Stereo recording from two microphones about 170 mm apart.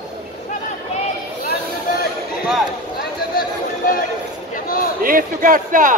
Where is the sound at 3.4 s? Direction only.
55° left (ahead or behind).